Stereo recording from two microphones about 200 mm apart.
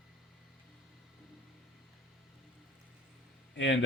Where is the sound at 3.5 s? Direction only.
65° left (ahead or behind).